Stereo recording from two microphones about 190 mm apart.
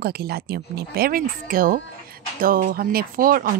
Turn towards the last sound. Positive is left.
turn(degrees=-50)  # may be behind; listen again after turning